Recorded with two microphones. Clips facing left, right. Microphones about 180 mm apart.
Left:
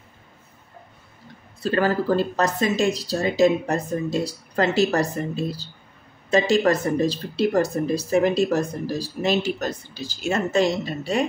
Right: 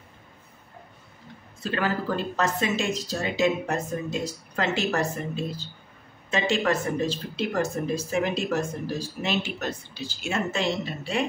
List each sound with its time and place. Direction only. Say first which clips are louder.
1.6 s speech: left 6 dB; 40° left (ahead or behind)